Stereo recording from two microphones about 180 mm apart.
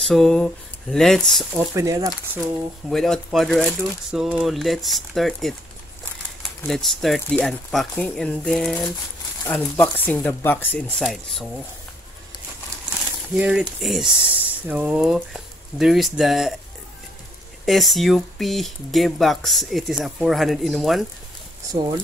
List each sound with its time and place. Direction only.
0.0 s speech: centre (ahead or behind)
1.7 s speech: 20° right (ahead or behind)
2.9 s speech: centre (ahead or behind)
6.7 s speech: centre (ahead or behind)
13.3 s speech: 5° right (ahead or behind)
17.6 s speech: centre (ahead or behind)